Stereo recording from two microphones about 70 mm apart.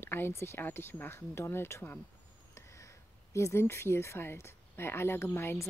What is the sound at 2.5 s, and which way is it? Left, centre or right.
Speech, left.